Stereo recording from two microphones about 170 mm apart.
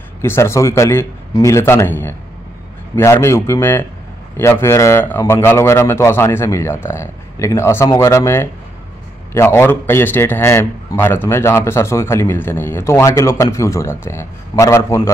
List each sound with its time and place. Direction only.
0.2 s a man's voice: 15° left (ahead or behind)